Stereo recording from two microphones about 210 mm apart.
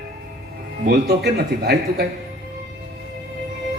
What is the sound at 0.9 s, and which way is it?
A man's voice, 50° right (ahead or behind).